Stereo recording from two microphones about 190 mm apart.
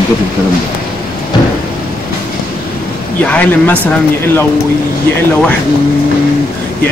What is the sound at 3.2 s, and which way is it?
Speech, 5° left (ahead or behind).